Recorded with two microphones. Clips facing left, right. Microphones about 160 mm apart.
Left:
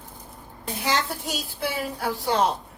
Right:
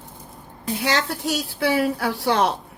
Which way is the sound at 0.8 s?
75° right (ahead or behind).